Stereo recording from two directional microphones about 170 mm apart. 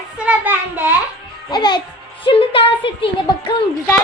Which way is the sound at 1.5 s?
25° left (ahead or behind).